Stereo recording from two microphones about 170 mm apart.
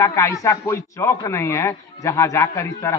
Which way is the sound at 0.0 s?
15° left (ahead or behind).